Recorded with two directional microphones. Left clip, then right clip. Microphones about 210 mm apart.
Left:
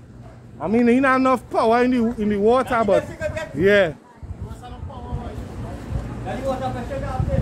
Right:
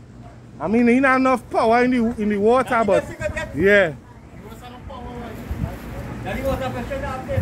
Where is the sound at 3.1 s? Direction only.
25° right (ahead or behind).